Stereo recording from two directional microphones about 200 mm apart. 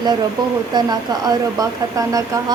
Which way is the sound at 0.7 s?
20° right (ahead or behind).